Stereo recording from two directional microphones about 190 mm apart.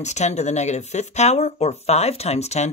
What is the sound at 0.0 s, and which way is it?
Speech, 35° left (ahead or behind).